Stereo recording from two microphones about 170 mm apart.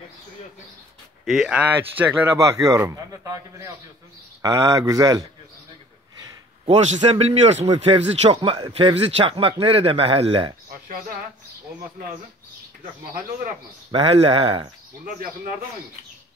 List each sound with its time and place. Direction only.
1.2 s speech: centre (ahead or behind); by 5.2 s 20° right (ahead or behind)
6.6 s a man's voice: 40° right (ahead or behind)
8.3 s a man's voice: 25° right (ahead or behind)
13.9 s a man's voice: 35° right (ahead or behind)
15.1 s a man's voice: 55° right (ahead or behind)